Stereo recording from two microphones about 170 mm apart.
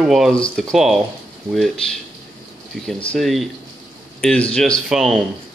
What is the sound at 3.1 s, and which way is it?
Speech, centre (ahead or behind).